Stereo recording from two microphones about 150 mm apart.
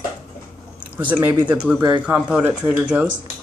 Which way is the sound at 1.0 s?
10° right (ahead or behind).